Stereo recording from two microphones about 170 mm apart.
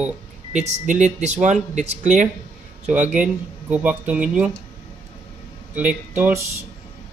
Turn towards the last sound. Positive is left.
turn(degrees=-10)  # may be behind; listen again after turning